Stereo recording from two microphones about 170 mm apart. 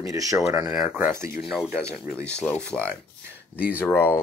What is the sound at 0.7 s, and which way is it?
Speech, 10° right (ahead or behind).